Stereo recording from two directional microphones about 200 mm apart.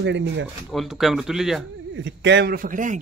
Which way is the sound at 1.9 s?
65° right (ahead or behind).